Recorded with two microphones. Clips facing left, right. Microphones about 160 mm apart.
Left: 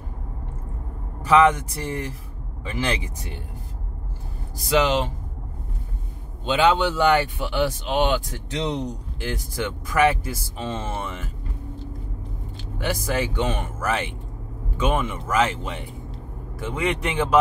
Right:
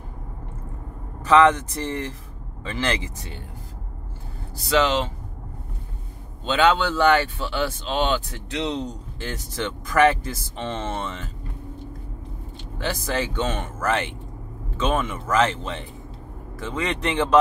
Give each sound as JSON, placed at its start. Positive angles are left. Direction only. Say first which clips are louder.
{"t": 1.2, "sound": "speech", "louder": "right 1 dB", "side_deg": 10}
{"t": 4.6, "sound": "speech", "louder": "even", "side_deg": 15}
{"t": 6.4, "sound": "speech", "louder": "even", "side_deg": 15}
{"t": 12.7, "sound": "speech", "louder": "left 1 dB", "side_deg": 10}